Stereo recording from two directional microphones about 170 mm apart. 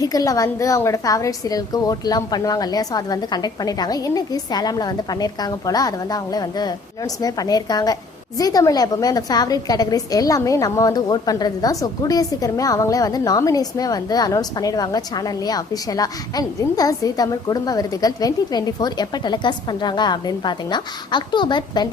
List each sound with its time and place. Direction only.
0.0 s a woman's voice: 20° left (ahead or behind)